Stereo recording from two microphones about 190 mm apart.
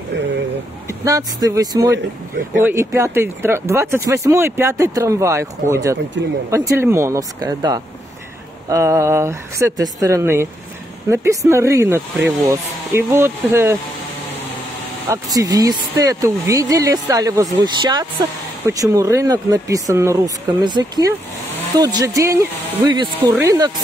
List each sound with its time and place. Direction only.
0.8 s speech: 15° right (ahead or behind)
15.0 s speech: 20° right (ahead or behind)